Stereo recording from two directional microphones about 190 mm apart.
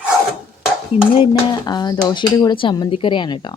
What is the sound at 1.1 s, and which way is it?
Speech, 25° left (ahead or behind).